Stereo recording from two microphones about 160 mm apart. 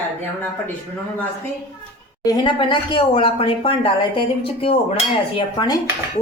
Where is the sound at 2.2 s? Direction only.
25° left (ahead or behind).